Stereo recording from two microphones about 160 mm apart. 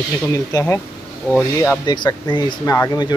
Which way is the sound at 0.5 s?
20° left (ahead or behind).